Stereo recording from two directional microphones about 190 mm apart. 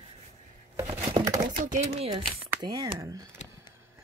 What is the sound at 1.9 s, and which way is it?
Speech, 30° right (ahead or behind).